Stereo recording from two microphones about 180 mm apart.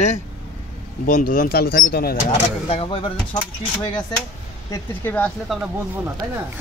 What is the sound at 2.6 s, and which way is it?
Speech, 30° left (ahead or behind).